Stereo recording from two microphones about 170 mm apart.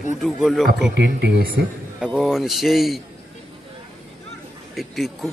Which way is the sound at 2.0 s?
Centre (ahead or behind).